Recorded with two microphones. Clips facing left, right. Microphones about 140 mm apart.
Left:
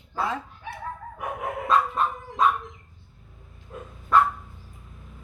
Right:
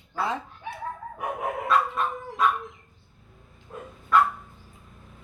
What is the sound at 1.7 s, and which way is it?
Dog, 35° left (ahead or behind).